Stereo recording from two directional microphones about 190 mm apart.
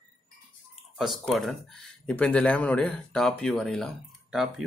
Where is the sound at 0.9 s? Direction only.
Centre (ahead or behind).